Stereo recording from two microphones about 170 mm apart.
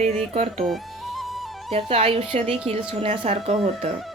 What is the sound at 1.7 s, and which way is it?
Speech, 35° right (ahead or behind).